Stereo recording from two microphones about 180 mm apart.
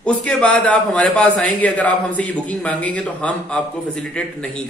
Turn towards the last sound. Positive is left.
turn(degrees=5)  # may be behind; listen again after turning